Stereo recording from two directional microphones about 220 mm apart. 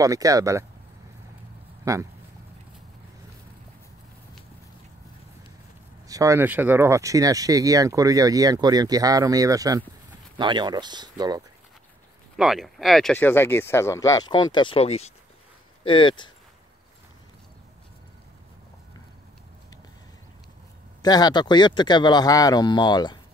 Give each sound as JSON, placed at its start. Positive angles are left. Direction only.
{"t": 0.0, "sound": "speech", "side_deg": -15}
{"t": 1.9, "sound": "speech", "side_deg": -15}
{"t": 6.0, "sound": "speech", "side_deg": -15}
{"t": 12.4, "sound": "speech", "side_deg": 0}
{"t": 21.0, "sound": "speech", "side_deg": 20}